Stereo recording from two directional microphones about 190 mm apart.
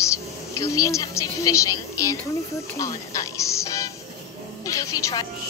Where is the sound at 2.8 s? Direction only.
15° left (ahead or behind).